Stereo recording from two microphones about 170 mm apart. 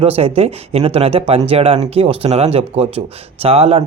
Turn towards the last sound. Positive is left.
turn(degrees=-35)  # may be behind; listen again after turning